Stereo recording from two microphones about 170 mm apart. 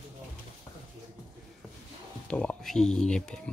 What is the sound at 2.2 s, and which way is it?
Speech, 5° left (ahead or behind).